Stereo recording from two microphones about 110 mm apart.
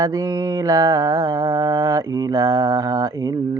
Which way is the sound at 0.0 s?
30° right (ahead or behind).